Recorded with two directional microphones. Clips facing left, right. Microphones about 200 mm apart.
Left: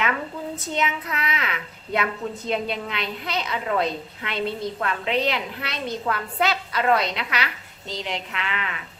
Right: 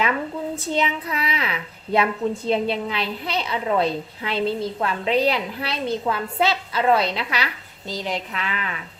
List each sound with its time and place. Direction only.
0.5 s a woman's voice: 30° right (ahead or behind)